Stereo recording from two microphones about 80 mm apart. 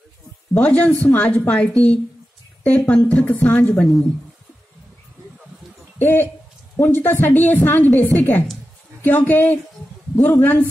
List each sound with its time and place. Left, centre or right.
0.6 s a woman's voice: centre
5.9 s a woman's voice: left
10.1 s a man's voice: left
10.4 s a woman's voice: left